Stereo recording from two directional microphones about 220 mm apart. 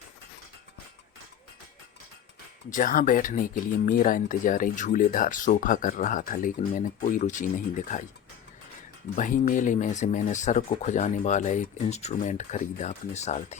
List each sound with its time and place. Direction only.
2.6 s speech: 40° left (ahead or behind)
9.1 s speech: 35° left (ahead or behind)